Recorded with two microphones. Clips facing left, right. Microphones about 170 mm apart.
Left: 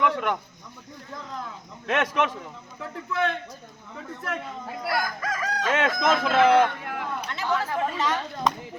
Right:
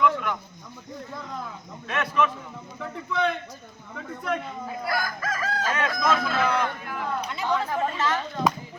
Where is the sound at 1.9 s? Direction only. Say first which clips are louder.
Left 1 dB; 85° left.